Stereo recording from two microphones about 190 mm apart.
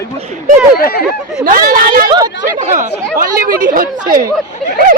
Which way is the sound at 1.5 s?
50° right (ahead or behind).